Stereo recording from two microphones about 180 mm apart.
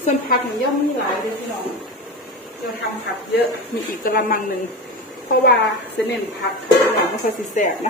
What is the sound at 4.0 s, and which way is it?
Speech, 50° left (ahead or behind).